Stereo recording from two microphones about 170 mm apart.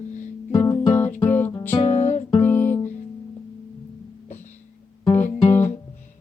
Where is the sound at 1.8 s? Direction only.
40° left (ahead or behind).